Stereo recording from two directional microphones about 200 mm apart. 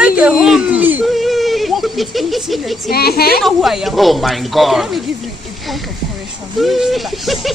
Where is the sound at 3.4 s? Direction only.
Centre (ahead or behind).